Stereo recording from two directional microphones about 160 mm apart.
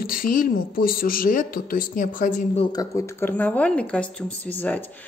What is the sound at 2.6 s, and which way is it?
Speech, 20° left (ahead or behind).